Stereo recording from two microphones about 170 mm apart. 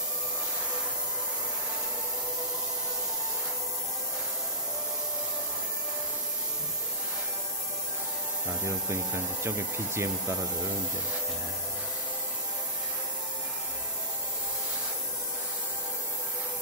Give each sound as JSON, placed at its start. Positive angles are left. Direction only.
{"t": 9.4, "sound": "speech", "side_deg": -15}